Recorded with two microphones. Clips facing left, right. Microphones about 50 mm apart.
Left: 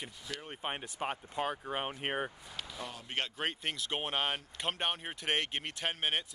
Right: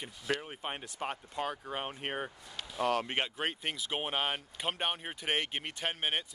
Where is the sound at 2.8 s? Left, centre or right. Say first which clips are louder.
Right 14 dB; right.